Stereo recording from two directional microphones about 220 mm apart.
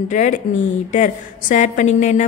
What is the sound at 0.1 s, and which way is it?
A woman's voice, 35° left (ahead or behind).